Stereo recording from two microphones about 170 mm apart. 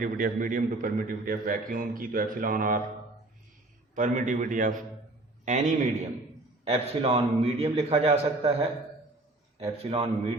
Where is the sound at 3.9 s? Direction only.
50° right (ahead or behind).